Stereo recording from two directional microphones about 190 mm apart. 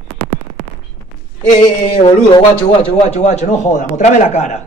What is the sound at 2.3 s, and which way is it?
A man's voice, 30° left (ahead or behind).